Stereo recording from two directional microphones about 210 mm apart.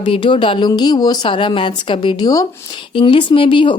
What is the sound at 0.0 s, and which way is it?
A woman's voice, 25° left (ahead or behind).